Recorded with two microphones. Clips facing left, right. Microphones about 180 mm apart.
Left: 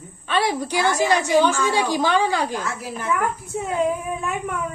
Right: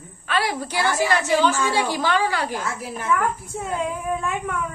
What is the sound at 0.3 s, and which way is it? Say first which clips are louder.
Speech: left 3 dB; 15° left (ahead or behind).